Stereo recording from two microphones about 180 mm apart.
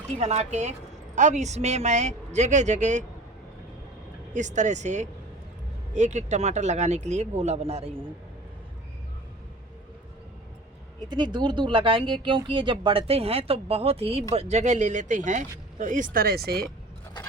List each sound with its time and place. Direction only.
0.2 s speech: 40° right (ahead or behind)
4.4 s speech: 40° right (ahead or behind)
11.1 s speech: 25° right (ahead or behind); by 16.6 s 60° right (ahead or behind)